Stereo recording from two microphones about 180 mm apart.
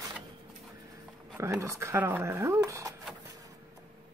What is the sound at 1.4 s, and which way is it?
Speech, 15° right (ahead or behind).